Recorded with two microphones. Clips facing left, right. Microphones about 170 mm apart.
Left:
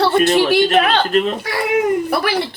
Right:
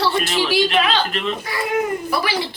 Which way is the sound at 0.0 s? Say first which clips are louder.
Left 7 dB; 55° left (ahead or behind).